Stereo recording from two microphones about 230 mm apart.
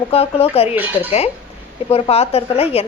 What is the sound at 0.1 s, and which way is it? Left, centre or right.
Speech, left.